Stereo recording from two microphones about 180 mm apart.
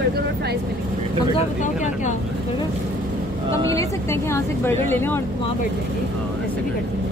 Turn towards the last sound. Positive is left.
turn(degrees=10)  # may be behind; listen again after turning